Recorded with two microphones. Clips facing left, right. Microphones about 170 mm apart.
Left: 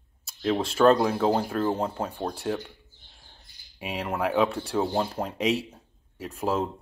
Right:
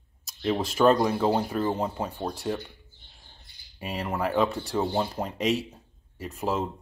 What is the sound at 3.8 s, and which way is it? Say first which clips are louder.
Speech: left 1 dB; 5° left (ahead or behind).